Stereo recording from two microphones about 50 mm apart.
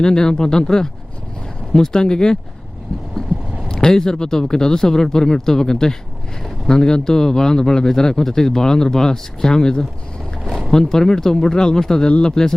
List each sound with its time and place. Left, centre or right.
0.0 s a man's voice: centre
3.7 s a man's voice: centre